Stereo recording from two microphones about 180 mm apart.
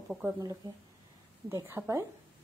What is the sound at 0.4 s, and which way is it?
A woman's voice, 20° right (ahead or behind).